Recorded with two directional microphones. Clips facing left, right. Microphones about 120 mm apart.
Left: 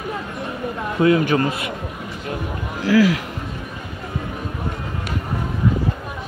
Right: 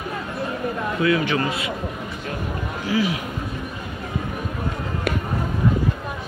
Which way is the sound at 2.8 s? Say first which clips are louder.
Left 7 dB; 90° left.